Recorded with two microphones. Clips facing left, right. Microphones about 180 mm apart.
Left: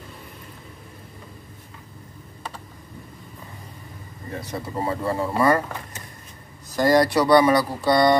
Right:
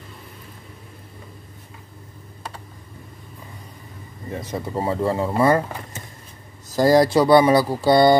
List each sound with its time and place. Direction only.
4.4 s speech: 20° right (ahead or behind)
6.7 s speech: 25° right (ahead or behind)